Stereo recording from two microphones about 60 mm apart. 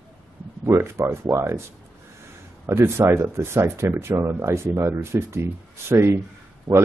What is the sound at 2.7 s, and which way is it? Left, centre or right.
Speech, right.